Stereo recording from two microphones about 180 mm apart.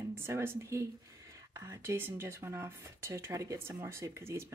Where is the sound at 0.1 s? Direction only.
15° right (ahead or behind).